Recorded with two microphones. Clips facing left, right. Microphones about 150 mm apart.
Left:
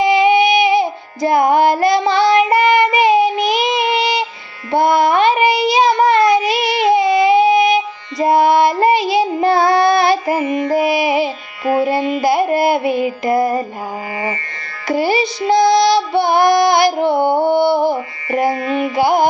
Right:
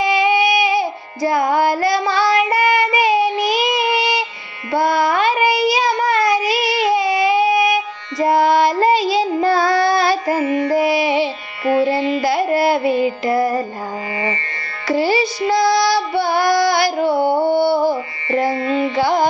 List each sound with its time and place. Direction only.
0.0 s carnatic music: 20° left (ahead or behind)
3.4 s child singing: 20° left (ahead or behind)
12.1 s carnatic music: 15° left (ahead or behind)
13.3 s music: 15° left (ahead or behind)
14.8 s music: 20° left (ahead or behind)
17.2 s music: 50° left (ahead or behind)
17.6 s carnatic music: 20° left (ahead or behind)
18.5 s music: 30° right (ahead or behind)
18.9 s carnatic music: 15° left (ahead or behind)